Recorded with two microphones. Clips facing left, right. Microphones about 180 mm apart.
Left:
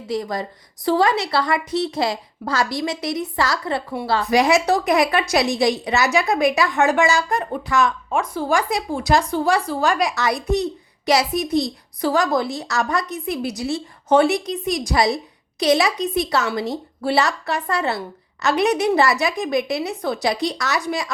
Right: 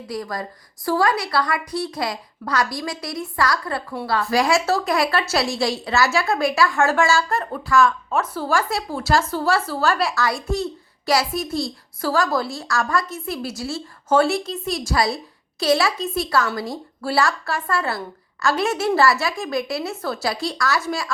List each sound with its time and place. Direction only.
0.1 s a woman's voice: 25° left (ahead or behind)